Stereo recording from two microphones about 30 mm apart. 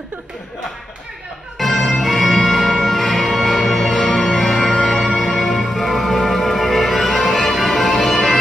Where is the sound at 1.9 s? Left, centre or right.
Centre.